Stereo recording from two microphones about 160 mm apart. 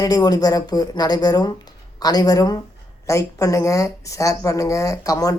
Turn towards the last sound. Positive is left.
turn(degrees=20)  # may be behind; listen again after turning